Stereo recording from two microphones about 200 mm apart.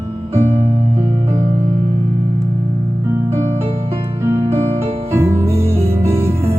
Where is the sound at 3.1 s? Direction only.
15° right (ahead or behind).